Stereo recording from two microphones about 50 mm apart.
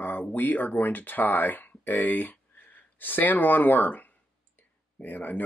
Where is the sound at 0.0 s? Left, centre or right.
Left.